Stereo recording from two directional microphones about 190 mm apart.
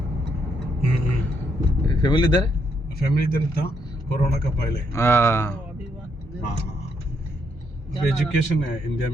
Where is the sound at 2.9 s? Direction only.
50° left (ahead or behind).